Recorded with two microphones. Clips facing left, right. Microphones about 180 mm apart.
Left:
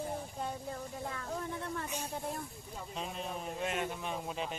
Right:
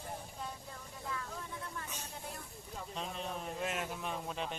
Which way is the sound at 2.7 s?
Centre (ahead or behind).